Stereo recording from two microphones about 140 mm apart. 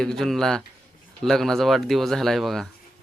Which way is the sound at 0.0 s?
5° left (ahead or behind).